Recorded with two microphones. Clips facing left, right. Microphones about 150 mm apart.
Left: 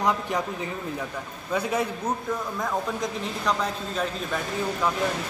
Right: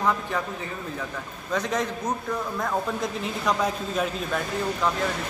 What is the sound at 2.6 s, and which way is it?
Speech, centre (ahead or behind).